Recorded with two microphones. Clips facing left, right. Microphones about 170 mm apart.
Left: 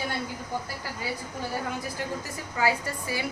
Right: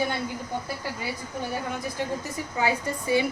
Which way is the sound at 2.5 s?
20° right (ahead or behind).